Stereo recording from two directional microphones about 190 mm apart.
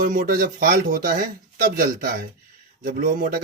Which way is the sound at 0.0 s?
45° right (ahead or behind).